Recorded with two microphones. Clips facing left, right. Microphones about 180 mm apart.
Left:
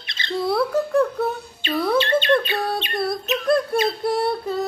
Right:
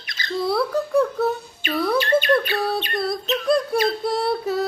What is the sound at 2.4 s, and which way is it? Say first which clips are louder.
Bird: right 1 dB; 20° left (ahead or behind).